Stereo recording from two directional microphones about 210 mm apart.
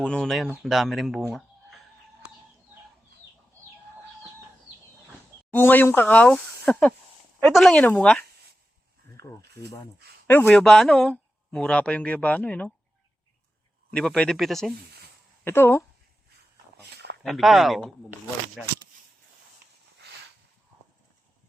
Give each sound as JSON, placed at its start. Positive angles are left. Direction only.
{"t": 0.0, "sound": "speech", "side_deg": 5}
{"t": 5.5, "sound": "speech", "side_deg": 10}
{"t": 9.2, "sound": "snake", "side_deg": -50}
{"t": 10.2, "sound": "speech", "side_deg": 10}
{"t": 13.9, "sound": "speech", "side_deg": 5}
{"t": 16.7, "sound": "a sound", "side_deg": -55}
{"t": 17.2, "sound": "speech", "side_deg": 0}